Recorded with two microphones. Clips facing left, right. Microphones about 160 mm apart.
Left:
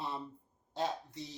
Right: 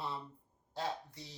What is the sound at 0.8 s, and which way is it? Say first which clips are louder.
Speech: left 3 dB; 20° left (ahead or behind).